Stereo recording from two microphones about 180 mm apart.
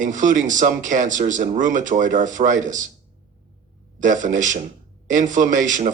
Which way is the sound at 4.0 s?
45° right (ahead or behind).